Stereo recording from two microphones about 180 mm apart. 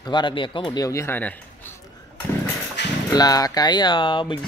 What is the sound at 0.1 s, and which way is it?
Speech, 25° left (ahead or behind).